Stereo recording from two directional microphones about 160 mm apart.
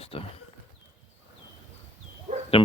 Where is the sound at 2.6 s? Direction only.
35° left (ahead or behind).